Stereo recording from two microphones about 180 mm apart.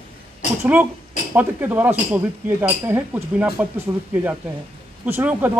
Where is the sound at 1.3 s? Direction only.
10° right (ahead or behind).